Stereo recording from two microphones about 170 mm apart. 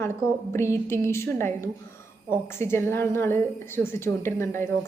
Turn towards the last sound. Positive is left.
turn(degrees=15)  # may be behind; listen again after turning